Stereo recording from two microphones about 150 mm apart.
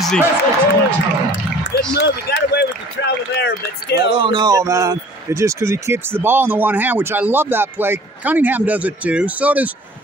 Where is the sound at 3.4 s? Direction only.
90° left.